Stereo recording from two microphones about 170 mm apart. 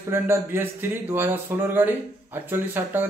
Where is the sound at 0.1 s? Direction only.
15° right (ahead or behind).